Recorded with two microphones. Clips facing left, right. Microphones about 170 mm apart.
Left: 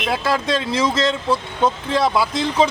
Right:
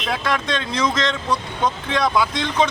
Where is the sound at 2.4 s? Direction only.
30° left (ahead or behind).